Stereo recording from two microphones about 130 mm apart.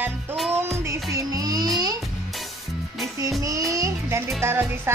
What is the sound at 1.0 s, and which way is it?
Music, 25° right (ahead or behind).